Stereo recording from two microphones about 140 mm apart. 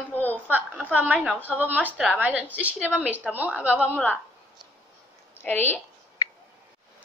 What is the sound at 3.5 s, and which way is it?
Speech, 15° left (ahead or behind).